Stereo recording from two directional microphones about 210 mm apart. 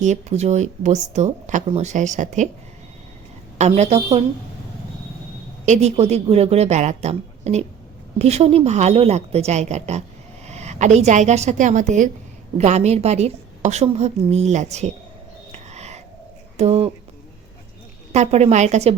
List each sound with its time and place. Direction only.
0.0 s speech: 35° right (ahead or behind)
3.6 s a woman's voice: 30° right (ahead or behind)
5.6 s a woman's voice: 35° right (ahead or behind)
15.5 s a sound: 30° right (ahead or behind)
16.6 s a woman's voice: 30° right (ahead or behind)
18.1 s speech: 30° right (ahead or behind)